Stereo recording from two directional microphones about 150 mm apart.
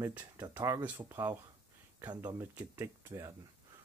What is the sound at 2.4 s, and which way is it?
Speech, 15° right (ahead or behind).